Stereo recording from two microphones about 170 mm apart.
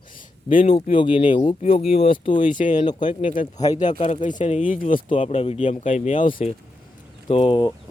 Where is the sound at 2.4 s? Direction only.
50° left (ahead or behind).